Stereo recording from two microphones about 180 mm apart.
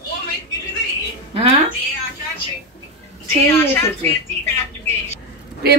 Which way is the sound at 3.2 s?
10° left (ahead or behind).